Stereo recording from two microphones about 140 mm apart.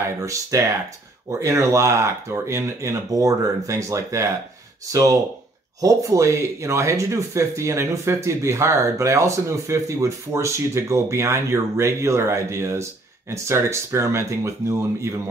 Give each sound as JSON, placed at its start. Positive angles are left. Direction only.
{"t": 0.2, "sound": "speech", "side_deg": -20}
{"t": 5.8, "sound": "speech", "side_deg": -25}